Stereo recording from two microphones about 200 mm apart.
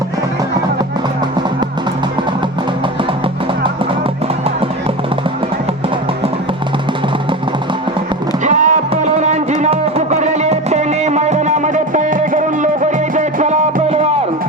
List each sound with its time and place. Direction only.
8.4 s music: 40° right (ahead or behind)